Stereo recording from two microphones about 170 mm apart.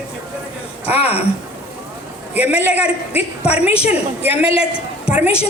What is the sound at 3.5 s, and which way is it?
Speech, 35° left (ahead or behind).